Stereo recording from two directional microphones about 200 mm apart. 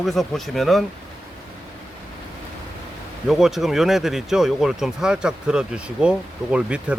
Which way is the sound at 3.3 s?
Centre (ahead or behind).